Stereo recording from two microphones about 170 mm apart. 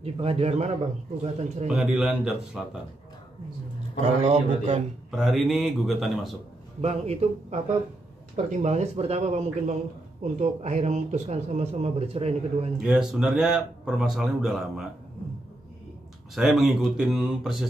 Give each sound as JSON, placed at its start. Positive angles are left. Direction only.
{"t": 0.0, "sound": "a man's voice", "side_deg": -35}
{"t": 1.7, "sound": "speech", "side_deg": -5}
{"t": 4.0, "sound": "speech", "side_deg": -35}
{"t": 5.1, "sound": "speech", "side_deg": 0}
{"t": 6.8, "sound": "speech", "side_deg": -35}
{"t": 12.7, "sound": "speech", "side_deg": -5}
{"t": 16.3, "sound": "speech", "side_deg": 0}